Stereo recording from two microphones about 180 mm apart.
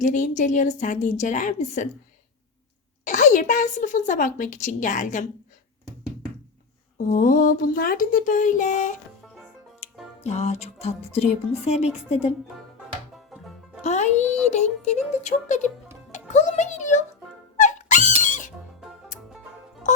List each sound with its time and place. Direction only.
0.0 s a woman's voice: 45° left (ahead or behind)
3.0 s a woman's voice: 45° left (ahead or behind)
7.1 s a woman's voice: 50° left (ahead or behind)
10.2 s speech: 35° left (ahead or behind)
13.3 s music: 5° right (ahead or behind)
13.8 s speech: 40° left (ahead or behind)
16.1 s music: 40° left (ahead or behind)